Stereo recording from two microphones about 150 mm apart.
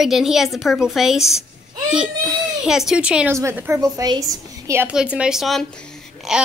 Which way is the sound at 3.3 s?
15° right (ahead or behind).